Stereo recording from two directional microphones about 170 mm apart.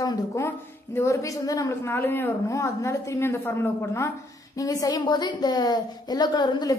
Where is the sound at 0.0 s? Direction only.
25° left (ahead or behind).